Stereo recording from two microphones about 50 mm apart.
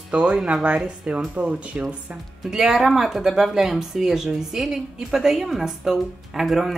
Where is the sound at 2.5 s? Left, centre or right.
Centre.